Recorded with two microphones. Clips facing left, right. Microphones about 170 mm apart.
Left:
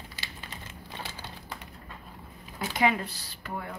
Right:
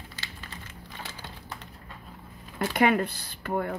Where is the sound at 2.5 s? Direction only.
55° right (ahead or behind).